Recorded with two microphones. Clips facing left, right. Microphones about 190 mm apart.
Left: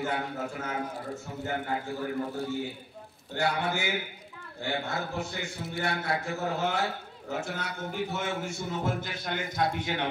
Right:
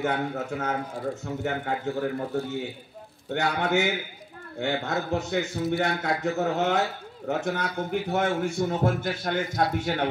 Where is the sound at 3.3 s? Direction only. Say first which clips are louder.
Right 3 dB; 70° right (ahead or behind); by 10.0 s 50° right (ahead or behind).